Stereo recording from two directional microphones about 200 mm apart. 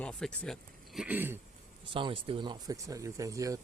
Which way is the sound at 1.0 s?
10° right (ahead or behind).